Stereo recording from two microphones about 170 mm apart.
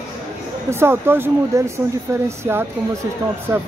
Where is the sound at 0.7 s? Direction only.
15° right (ahead or behind).